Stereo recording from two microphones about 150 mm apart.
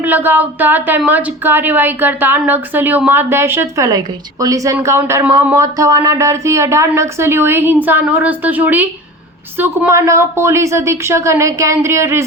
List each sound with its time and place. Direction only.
0.0 s a woman's voice: 15° right (ahead or behind)